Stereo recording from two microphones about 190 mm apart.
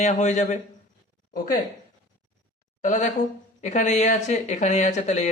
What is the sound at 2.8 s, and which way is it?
Speech, 40° left (ahead or behind).